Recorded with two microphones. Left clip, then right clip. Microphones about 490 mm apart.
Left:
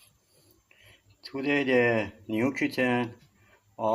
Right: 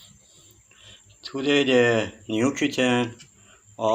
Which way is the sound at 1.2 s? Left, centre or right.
Left.